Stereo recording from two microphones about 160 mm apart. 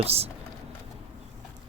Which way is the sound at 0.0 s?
40° right (ahead or behind).